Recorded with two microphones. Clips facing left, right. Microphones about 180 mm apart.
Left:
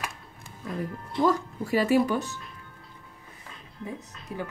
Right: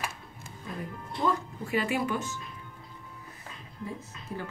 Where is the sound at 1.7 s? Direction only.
40° left (ahead or behind).